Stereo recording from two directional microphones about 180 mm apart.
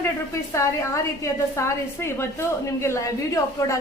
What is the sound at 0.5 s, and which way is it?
A woman's voice, 15° left (ahead or behind).